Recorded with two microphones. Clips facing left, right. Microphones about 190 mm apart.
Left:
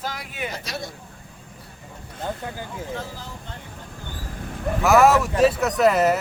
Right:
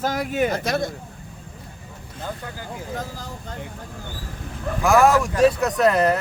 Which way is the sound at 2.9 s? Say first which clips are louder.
Right 4 dB; 40° right (ahead or behind).